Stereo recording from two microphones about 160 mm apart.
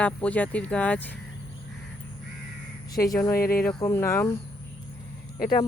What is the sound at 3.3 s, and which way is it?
Speech, 70° left (ahead or behind).